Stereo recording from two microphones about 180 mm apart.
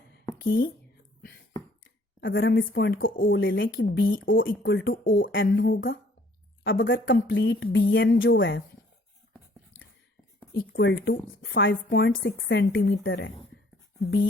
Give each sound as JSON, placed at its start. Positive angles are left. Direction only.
{"t": 1.8, "sound": "speech", "side_deg": 90}
{"t": 3.2, "sound": "speech", "side_deg": 90}
{"t": 5.3, "sound": "speech", "side_deg": 90}
{"t": 6.7, "sound": "a woman's voice", "side_deg": 90}
{"t": 10.5, "sound": "a woman's voice", "side_deg": 65}
{"t": 14.0, "sound": "speech", "side_deg": 65}